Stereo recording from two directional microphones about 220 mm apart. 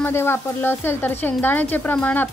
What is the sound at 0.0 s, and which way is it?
Speech, 10° left (ahead or behind).